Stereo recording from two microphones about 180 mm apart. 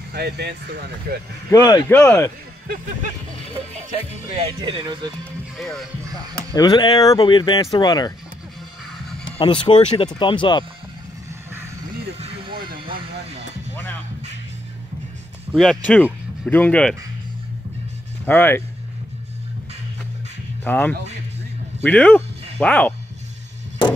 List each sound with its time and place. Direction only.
0.1 s speech: 65° right (ahead or behind)
1.5 s speech: 15° left (ahead or behind)
4.4 s speech: 30° right (ahead or behind)
5.6 s speech: centre (ahead or behind)
6.5 s speech: 20° left (ahead or behind)
9.4 s speech: 25° left (ahead or behind)
12.6 s vehicle: 30° right (ahead or behind)
15.5 s speech: centre (ahead or behind)
18.2 s speech: 10° left (ahead or behind)
20.6 s speech: 10° left (ahead or behind)